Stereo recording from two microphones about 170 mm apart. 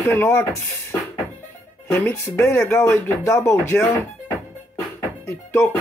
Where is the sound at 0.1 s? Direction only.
15° left (ahead or behind).